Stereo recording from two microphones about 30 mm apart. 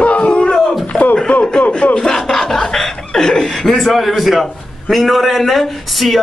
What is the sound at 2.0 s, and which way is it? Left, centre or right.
Chuckle, centre.